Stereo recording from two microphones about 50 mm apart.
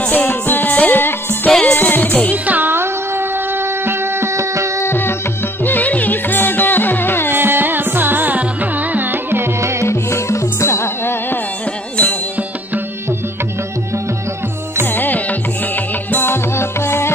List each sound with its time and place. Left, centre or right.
0.1 s music: left
2.3 s music: right
2.7 s music: right
4.8 s music: left
5.6 s music: left
7.3 s music: right
9.6 s music: right
9.8 s music: left
14.9 s music: left
16.3 s music: left